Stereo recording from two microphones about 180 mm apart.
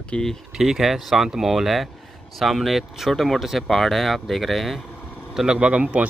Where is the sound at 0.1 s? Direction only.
5° left (ahead or behind).